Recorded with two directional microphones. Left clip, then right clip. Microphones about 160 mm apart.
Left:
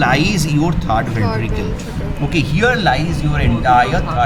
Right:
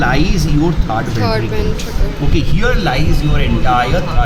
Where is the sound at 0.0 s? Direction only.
20° left (ahead or behind).